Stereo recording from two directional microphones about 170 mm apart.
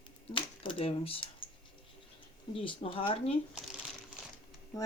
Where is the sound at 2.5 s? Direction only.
30° left (ahead or behind).